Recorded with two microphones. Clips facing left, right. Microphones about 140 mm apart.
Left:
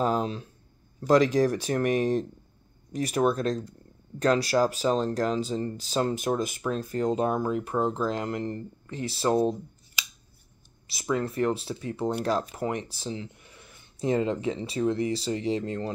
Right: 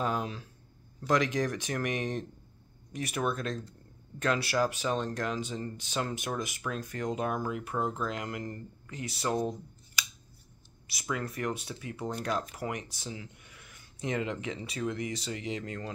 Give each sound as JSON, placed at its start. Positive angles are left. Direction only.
{"t": 0.0, "sound": "speech", "side_deg": 35}
{"t": 10.9, "sound": "speech", "side_deg": 30}